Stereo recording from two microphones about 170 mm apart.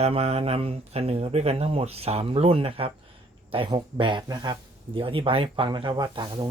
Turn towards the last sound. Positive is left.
turn(degrees=-25)  # may be behind; listen again after turning